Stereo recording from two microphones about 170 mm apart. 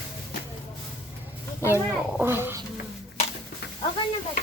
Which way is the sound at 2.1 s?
15° right (ahead or behind).